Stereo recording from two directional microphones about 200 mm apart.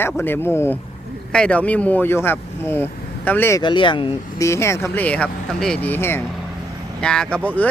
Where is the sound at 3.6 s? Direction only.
25° left (ahead or behind).